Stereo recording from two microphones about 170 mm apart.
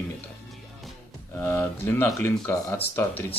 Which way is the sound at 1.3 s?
15° left (ahead or behind).